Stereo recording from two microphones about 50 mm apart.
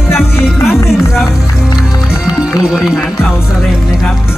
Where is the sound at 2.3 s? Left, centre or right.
Centre.